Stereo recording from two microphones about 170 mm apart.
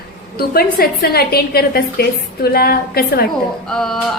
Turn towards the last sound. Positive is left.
turn(degrees=5)  # may be behind; listen again after turning